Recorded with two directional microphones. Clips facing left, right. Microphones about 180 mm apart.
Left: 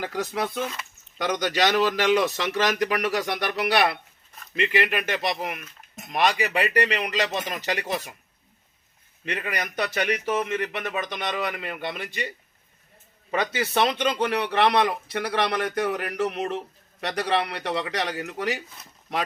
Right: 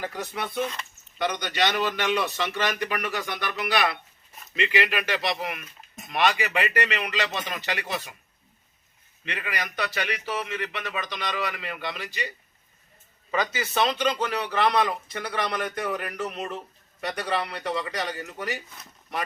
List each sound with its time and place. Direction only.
0.0 s speech: 80° left
3.2 s a man's voice: 70° left (ahead or behind); by 7.9 s 40° left (ahead or behind)
9.2 s a man's voice: 40° left (ahead or behind)
13.3 s speech: 60° left (ahead or behind); by 18.6 s 90° left